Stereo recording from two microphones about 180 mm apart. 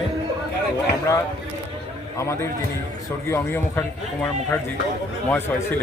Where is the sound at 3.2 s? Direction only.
15° left (ahead or behind).